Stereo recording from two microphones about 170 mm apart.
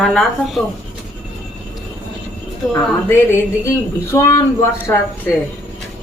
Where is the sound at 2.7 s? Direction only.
10° left (ahead or behind).